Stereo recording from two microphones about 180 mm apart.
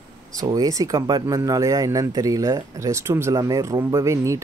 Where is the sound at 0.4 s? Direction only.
20° right (ahead or behind).